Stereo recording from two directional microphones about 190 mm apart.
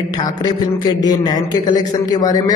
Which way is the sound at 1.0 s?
20° left (ahead or behind).